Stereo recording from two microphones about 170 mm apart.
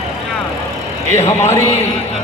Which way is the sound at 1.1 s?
15° left (ahead or behind).